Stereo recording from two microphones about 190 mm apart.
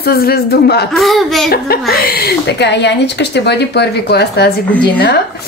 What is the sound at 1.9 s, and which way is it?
Speech, 55° left (ahead or behind).